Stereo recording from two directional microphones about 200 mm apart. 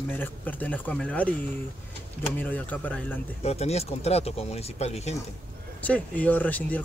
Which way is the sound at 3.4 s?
30° left (ahead or behind).